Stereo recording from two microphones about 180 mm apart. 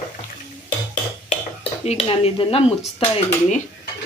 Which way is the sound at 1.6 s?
35° left (ahead or behind).